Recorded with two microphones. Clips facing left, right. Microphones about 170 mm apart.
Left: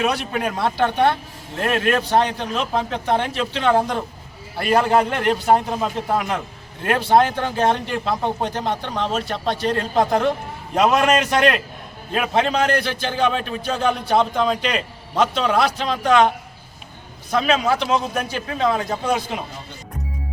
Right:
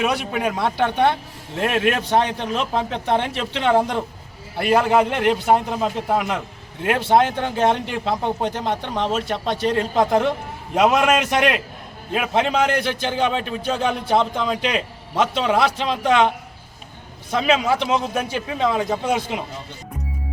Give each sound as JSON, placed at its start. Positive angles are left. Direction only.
{"t": 0.0, "sound": "speech", "side_deg": -15}
{"t": 0.6, "sound": "a man's voice", "side_deg": -15}
{"t": 4.7, "sound": "a man's voice", "side_deg": -5}
{"t": 17.3, "sound": "a man's voice", "side_deg": -20}